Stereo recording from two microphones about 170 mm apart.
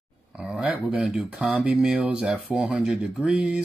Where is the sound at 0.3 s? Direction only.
5° right (ahead or behind).